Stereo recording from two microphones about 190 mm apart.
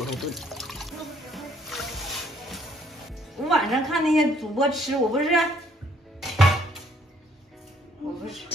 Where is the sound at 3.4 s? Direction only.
Centre (ahead or behind).